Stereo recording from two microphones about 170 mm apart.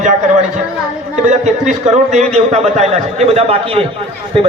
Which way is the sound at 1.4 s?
45° right (ahead or behind).